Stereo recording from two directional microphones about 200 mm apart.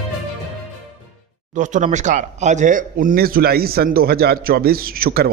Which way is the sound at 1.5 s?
40° right (ahead or behind).